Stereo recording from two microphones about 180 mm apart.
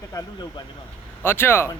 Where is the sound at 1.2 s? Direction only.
10° left (ahead or behind).